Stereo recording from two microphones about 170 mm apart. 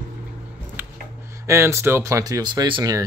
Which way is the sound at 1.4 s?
15° right (ahead or behind).